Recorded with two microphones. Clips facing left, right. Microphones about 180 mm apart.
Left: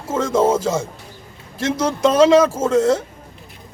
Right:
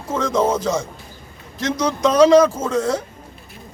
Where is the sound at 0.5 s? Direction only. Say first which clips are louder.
Left 1 dB; 5° left (ahead or behind).